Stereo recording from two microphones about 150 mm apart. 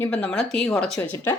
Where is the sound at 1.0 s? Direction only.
15° left (ahead or behind).